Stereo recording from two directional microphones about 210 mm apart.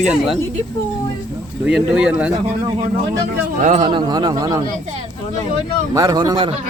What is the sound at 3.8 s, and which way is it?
Speech, 20° right (ahead or behind).